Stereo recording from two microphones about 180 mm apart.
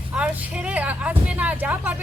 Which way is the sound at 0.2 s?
5° right (ahead or behind).